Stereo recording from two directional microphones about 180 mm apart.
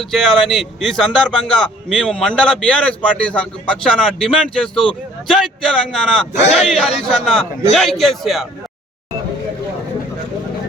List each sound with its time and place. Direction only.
0.0 s speech: centre (ahead or behind)
6.4 s a man's voice: 35° left (ahead or behind)
6.7 s speech: centre (ahead or behind)